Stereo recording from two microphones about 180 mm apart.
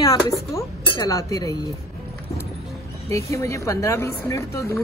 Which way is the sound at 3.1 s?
15° left (ahead or behind).